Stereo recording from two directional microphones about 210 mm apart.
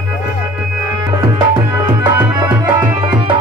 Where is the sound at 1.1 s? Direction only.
20° right (ahead or behind).